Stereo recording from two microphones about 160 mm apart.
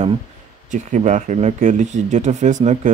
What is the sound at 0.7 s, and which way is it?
Speech, 50° right (ahead or behind).